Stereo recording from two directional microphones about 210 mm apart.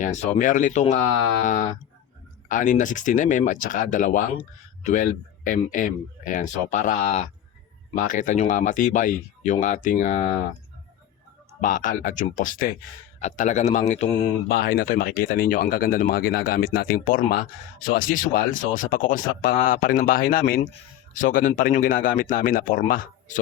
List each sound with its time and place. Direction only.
0.0 s a man's voice: 35° left (ahead or behind)
11.6 s speech: 40° left (ahead or behind)
14.4 s speech: 45° left (ahead or behind)